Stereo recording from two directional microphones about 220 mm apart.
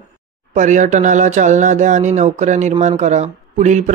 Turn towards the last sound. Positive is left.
turn(degrees=-35)  # may be behind; listen again after turning